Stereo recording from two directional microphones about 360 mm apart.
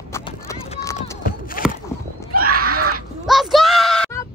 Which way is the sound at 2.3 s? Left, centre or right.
Right.